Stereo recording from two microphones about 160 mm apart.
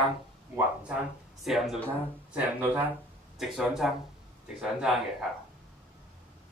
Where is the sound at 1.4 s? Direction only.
Centre (ahead or behind).